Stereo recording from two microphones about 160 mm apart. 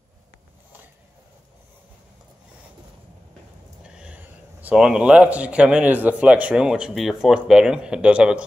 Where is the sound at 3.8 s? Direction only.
5° right (ahead or behind).